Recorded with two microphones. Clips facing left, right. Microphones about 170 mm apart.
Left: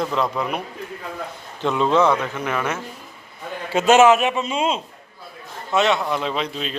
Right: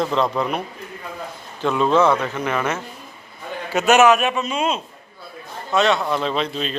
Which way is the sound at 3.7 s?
25° left (ahead or behind).